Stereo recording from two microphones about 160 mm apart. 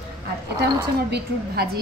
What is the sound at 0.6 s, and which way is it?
A woman's voice, 90° right.